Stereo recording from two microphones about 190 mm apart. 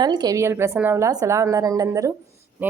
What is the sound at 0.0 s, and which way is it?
A woman's voice, 20° right (ahead or behind).